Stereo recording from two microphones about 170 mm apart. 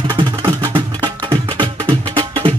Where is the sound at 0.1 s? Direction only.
30° right (ahead or behind).